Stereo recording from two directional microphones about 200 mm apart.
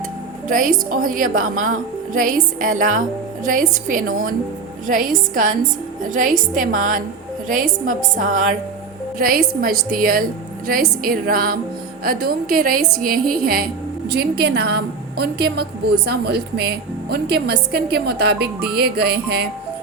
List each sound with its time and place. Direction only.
0.4 s a woman's voice: 40° right (ahead or behind)